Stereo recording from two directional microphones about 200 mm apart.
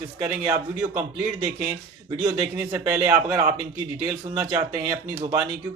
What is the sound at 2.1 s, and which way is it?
A man's voice, 15° right (ahead or behind).